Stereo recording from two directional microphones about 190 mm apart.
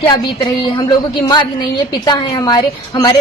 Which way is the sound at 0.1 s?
20° left (ahead or behind).